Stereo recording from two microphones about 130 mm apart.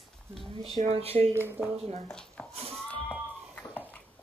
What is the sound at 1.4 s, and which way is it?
Speech, 15° right (ahead or behind).